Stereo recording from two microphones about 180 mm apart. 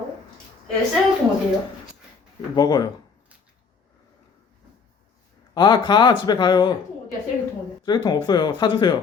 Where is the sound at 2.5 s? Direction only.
20° left (ahead or behind).